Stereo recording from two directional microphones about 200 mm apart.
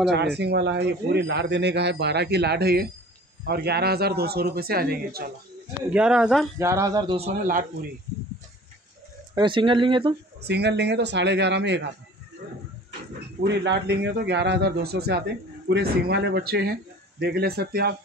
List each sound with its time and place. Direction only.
0.1 s a man's voice: 55° right (ahead or behind)
5.9 s speech: 5° right (ahead or behind)
6.7 s speech: 15° right (ahead or behind)
9.3 s speech: 25° right (ahead or behind)
10.4 s a man's voice: 55° right (ahead or behind)
13.4 s a man's voice: 60° right (ahead or behind)